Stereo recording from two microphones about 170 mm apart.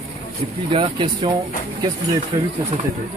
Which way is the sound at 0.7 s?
25° right (ahead or behind).